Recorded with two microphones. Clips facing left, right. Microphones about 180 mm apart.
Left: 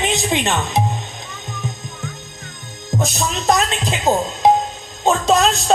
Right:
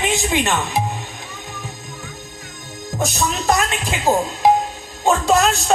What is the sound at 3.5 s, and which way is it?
Music, 20° left (ahead or behind).